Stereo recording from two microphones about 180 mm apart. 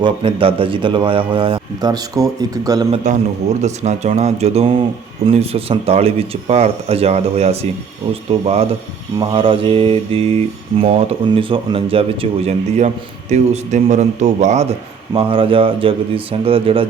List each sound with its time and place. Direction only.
0.0 s mantra: 30° right (ahead or behind)
2.9 s speech: 40° right (ahead or behind)
9.1 s mantra: 30° right (ahead or behind)
13.3 s speech: 40° right (ahead or behind)
15.1 s mantra: 30° right (ahead or behind)